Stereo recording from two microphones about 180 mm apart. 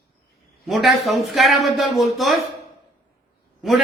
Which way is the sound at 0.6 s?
Centre (ahead or behind).